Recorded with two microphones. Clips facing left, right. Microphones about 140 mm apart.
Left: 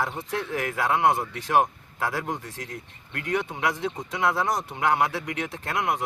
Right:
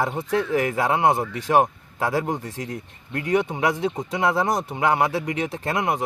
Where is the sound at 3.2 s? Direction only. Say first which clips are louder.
Right 5 dB; 20° right (ahead or behind).